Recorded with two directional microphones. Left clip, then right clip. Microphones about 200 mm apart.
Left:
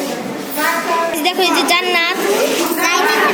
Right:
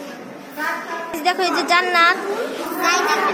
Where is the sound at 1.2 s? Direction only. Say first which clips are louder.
Left 5 dB; 5° right (ahead or behind).